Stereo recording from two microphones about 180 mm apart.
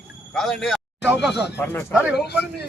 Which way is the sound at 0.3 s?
5° left (ahead or behind).